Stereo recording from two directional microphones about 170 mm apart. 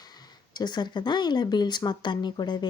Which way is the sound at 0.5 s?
25° left (ahead or behind).